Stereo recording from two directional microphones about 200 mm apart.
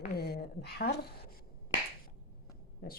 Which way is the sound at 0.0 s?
50° left (ahead or behind).